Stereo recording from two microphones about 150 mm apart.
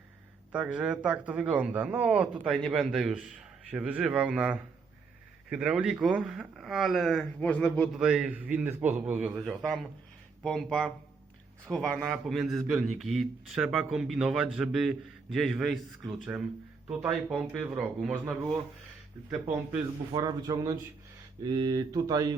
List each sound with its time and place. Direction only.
0.5 s a man's voice: 5° right (ahead or behind)
8.0 s speech: 5° right (ahead or behind)
10.4 s a man's voice: 5° left (ahead or behind)
20.1 s speech: 25° right (ahead or behind)